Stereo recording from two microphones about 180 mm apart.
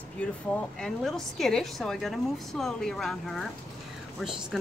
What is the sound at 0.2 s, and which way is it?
Speech, 10° left (ahead or behind).